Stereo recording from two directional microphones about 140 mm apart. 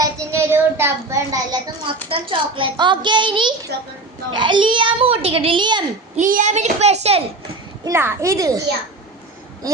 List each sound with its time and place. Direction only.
0.0 s child singing: 20° right (ahead or behind)
2.0 s a child's voice: 35° right (ahead or behind)
6.1 s a child's voice: 65° right (ahead or behind); by 7.2 s 50° right (ahead or behind)
7.9 s a child's voice: 20° right (ahead or behind)